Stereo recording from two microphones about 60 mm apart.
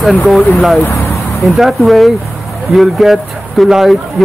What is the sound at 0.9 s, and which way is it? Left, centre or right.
Vehicle, left.